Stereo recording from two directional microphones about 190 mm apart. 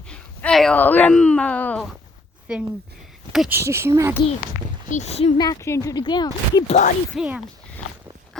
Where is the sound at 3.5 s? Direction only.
15° right (ahead or behind).